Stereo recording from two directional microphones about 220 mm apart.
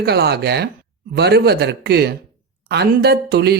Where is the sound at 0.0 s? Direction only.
45° right (ahead or behind).